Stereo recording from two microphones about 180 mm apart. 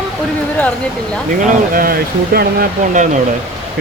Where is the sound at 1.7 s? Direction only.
55° right (ahead or behind).